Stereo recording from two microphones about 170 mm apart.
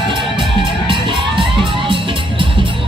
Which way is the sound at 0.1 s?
30° right (ahead or behind).